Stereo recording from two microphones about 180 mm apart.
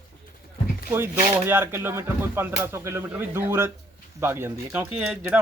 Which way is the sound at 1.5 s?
10° right (ahead or behind).